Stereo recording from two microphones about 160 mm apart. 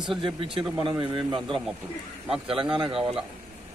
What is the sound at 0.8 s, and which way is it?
Speech, 30° right (ahead or behind).